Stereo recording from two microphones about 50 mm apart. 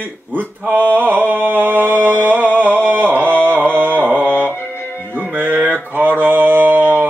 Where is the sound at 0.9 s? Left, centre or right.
Right.